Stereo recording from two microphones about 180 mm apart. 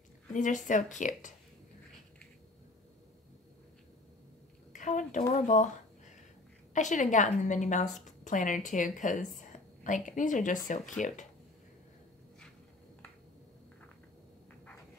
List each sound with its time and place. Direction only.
0.3 s speech: 45° left (ahead or behind)
4.7 s a woman's voice: 45° left (ahead or behind)
6.7 s a woman's voice: 45° left (ahead or behind)